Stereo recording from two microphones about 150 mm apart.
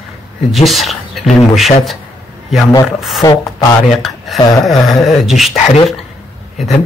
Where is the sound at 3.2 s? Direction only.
25° left (ahead or behind).